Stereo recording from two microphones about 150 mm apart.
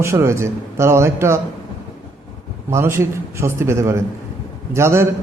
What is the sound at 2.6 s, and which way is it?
A man's voice, 15° right (ahead or behind).